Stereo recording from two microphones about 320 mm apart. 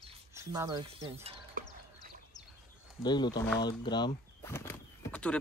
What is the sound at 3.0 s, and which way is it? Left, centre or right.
Speech, centre.